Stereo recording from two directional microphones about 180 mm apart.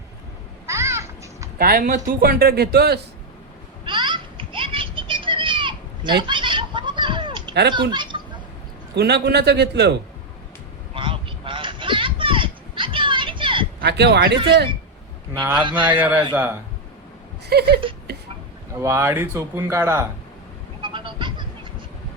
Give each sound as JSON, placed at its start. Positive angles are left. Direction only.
{"t": 0.7, "sound": "children playing", "side_deg": -15}
{"t": 1.5, "sound": "speech", "side_deg": -55}
{"t": 3.8, "sound": "a sound", "side_deg": -25}
{"t": 7.7, "sound": "speech", "side_deg": -25}
{"t": 9.0, "sound": "a man's voice", "side_deg": -70}
{"t": 10.9, "sound": "a sound", "side_deg": -30}
{"t": 13.8, "sound": "a man's voice", "side_deg": -65}
{"t": 15.5, "sound": "speech", "side_deg": -25}
{"t": 15.9, "sound": "speech", "side_deg": -10}
{"t": 17.5, "sound": "speech", "side_deg": -65}
{"t": 18.8, "sound": "speech", "side_deg": -15}
{"t": 20.8, "sound": "a sound", "side_deg": -25}